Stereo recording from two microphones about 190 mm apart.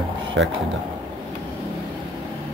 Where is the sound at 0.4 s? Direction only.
65° right (ahead or behind).